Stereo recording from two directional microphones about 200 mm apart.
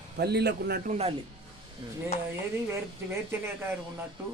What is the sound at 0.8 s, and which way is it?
Speech, 30° right (ahead or behind).